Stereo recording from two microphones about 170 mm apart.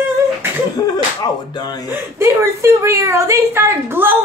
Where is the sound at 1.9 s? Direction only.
15° right (ahead or behind).